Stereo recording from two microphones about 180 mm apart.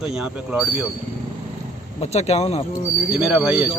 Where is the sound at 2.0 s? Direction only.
35° left (ahead or behind).